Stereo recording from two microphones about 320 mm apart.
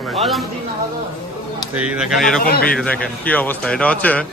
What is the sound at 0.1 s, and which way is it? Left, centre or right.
Speech, centre.